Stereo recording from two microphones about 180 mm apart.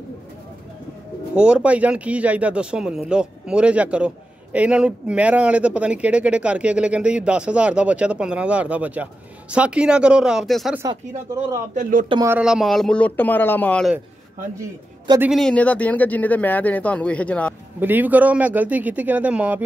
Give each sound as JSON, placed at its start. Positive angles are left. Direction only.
{"t": 1.3, "sound": "speech", "side_deg": -5}
{"t": 10.8, "sound": "speech", "side_deg": -15}
{"t": 11.7, "sound": "speech", "side_deg": -45}
{"t": 12.3, "sound": "speech", "side_deg": -5}
{"t": 14.6, "sound": "a man's voice", "side_deg": -15}
{"t": 15.3, "sound": "speech", "side_deg": 5}
{"t": 17.7, "sound": "speech", "side_deg": -10}